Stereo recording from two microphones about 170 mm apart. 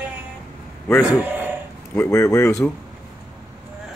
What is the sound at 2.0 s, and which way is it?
Speech, 15° left (ahead or behind).